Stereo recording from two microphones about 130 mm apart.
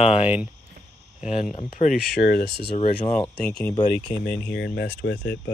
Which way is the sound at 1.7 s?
75° left (ahead or behind).